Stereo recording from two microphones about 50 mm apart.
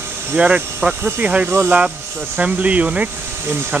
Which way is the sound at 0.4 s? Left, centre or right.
Right.